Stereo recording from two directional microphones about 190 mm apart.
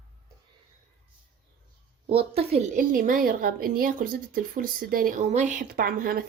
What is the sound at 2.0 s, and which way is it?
A woman's voice, 30° right (ahead or behind).